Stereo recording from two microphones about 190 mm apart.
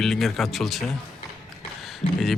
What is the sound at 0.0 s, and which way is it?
Speech, centre (ahead or behind).